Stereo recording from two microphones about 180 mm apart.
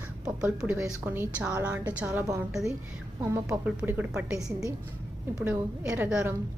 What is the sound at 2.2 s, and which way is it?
Speech, 20° right (ahead or behind).